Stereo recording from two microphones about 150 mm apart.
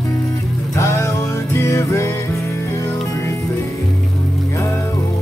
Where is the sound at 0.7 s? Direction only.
20° left (ahead or behind).